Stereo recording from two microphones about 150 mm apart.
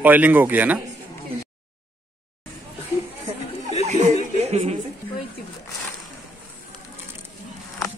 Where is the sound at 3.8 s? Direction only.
50° right (ahead or behind).